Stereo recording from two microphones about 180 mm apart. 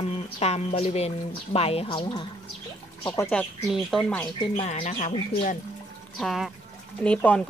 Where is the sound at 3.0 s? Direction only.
15° left (ahead or behind).